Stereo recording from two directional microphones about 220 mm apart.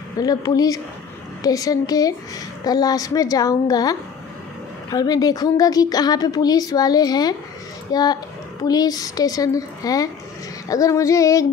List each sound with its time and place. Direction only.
0.2 s a woman's voice: 15° left (ahead or behind)
4.9 s a woman's voice: 15° left (ahead or behind)